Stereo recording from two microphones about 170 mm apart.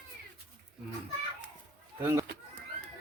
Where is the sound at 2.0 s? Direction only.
20° right (ahead or behind).